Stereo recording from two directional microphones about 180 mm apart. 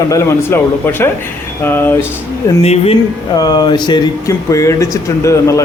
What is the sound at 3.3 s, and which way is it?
A man's voice, 20° left (ahead or behind).